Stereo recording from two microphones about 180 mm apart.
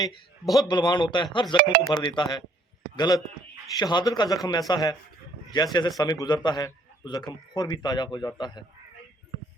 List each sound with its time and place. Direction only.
0.7 s a man's voice: 25° left (ahead or behind)